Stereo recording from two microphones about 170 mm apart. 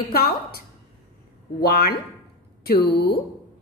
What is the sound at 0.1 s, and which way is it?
Speech, 65° left (ahead or behind).